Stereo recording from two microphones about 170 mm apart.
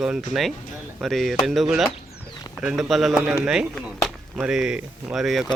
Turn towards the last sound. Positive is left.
turn(degrees=0)  # may be behind; listen again after turning